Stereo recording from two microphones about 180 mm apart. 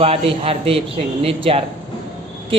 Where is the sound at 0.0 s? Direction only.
35° right (ahead or behind).